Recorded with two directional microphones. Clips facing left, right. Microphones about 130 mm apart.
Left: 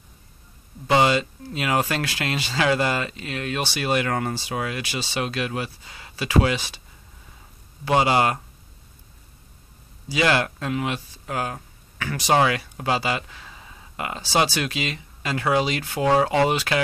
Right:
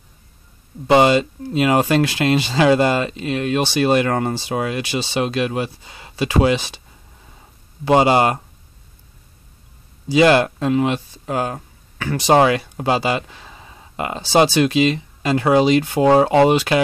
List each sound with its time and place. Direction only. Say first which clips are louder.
0.8 s speech: right 6 dB; 25° right (ahead or behind)
7.8 s speech: right 5 dB; 25° right (ahead or behind)
10.0 s speech: right 8 dB; 25° right (ahead or behind)